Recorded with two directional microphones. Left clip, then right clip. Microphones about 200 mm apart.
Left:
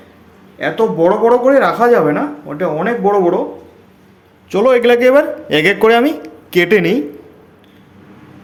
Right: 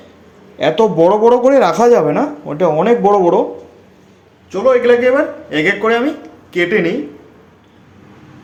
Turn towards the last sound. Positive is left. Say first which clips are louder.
# left 3 dB
turn(degrees=45)  # may be behind; listen again after turning